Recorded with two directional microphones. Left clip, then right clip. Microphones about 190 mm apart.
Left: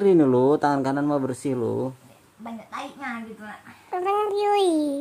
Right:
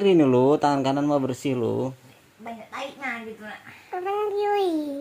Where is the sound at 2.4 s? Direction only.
50° left (ahead or behind).